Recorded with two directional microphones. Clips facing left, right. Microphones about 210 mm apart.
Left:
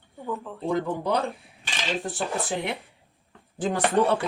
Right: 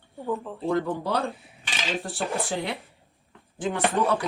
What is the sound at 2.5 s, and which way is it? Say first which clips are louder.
Speech: even; 20° left (ahead or behind).